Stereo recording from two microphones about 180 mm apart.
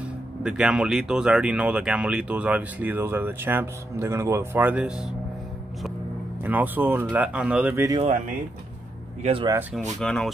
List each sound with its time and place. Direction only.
0.4 s speech: 5° right (ahead or behind)
6.4 s speech: 10° right (ahead or behind)
9.2 s speech: 30° right (ahead or behind)
9.9 s speech: 5° left (ahead or behind)